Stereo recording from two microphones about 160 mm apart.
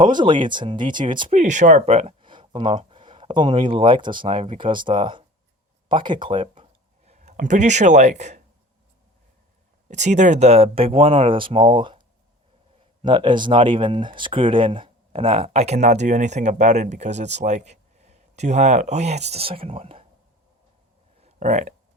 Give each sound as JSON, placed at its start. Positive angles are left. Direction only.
{"t": 0.0, "sound": "speech", "side_deg": -30}
{"t": 1.3, "sound": "speech", "side_deg": -50}
{"t": 9.9, "sound": "speech", "side_deg": -45}
{"t": 21.2, "sound": "a sound", "side_deg": -45}